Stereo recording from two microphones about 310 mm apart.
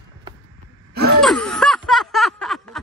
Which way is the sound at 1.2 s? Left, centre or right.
Centre.